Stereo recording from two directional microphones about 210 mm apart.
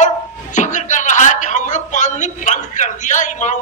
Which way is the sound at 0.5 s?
35° left (ahead or behind).